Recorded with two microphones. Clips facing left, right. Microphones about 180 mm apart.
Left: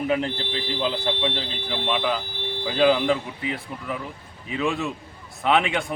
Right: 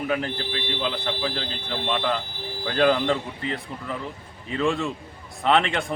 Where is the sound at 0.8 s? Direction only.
25° left (ahead or behind).